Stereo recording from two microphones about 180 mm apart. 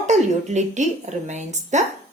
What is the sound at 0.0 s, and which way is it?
Speech, 40° right (ahead or behind).